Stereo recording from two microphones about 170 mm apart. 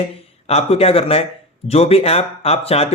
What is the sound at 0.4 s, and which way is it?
Speech, 35° left (ahead or behind).